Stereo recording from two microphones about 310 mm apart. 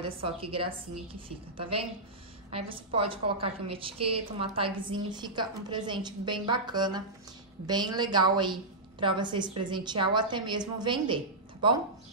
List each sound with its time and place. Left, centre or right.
0.2 s a woman's voice: centre